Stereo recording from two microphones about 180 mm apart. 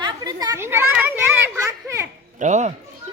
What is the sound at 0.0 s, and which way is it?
Children playing, 20° right (ahead or behind).